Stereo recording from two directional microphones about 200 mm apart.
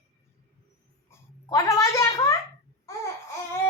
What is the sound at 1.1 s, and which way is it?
A child's voice, 15° left (ahead or behind).